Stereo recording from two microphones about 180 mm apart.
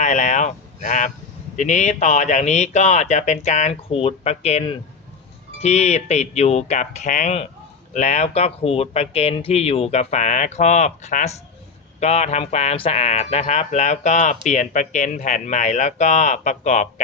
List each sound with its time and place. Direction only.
0.0 s speech: 40° left (ahead or behind)